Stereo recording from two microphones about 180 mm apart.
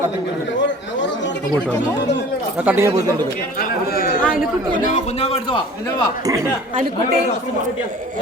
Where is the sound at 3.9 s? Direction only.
55° left (ahead or behind); by 5.6 s 30° left (ahead or behind).